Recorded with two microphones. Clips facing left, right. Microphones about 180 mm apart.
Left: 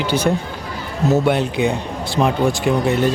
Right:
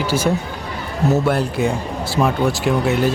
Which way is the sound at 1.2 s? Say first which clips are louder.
Left 1 dB; centre (ahead or behind).